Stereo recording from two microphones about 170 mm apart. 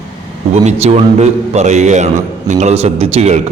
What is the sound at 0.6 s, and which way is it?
A man's voice, 40° right (ahead or behind).